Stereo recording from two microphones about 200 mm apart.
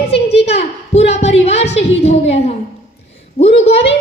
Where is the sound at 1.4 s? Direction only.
30° left (ahead or behind).